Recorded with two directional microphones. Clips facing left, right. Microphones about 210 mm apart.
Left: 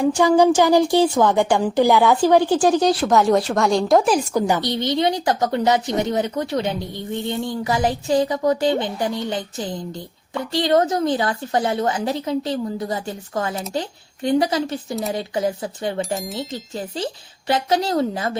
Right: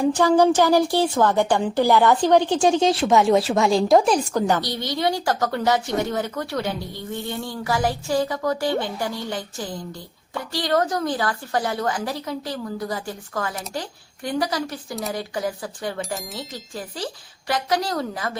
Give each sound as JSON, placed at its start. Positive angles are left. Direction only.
{"t": 0.1, "sound": "speech", "side_deg": 10}
{"t": 4.6, "sound": "speech", "side_deg": 20}
{"t": 16.0, "sound": "speech", "side_deg": 0}
{"t": 16.5, "sound": "speech", "side_deg": 25}